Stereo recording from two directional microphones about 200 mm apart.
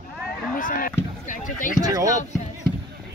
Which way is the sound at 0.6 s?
45° left (ahead or behind).